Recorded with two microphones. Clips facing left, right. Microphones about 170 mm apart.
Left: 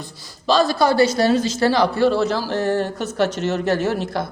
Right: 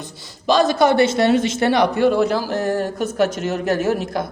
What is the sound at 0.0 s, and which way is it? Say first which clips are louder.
A man's voice: right 2 dB; 20° right (ahead or behind).